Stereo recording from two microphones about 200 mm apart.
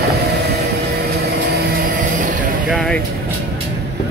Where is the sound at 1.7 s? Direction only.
45° right (ahead or behind).